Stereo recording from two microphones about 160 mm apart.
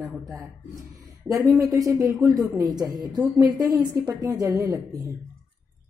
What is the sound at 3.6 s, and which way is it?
Speech, 25° right (ahead or behind).